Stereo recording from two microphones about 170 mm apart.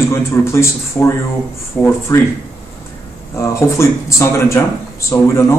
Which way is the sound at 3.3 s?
15° left (ahead or behind).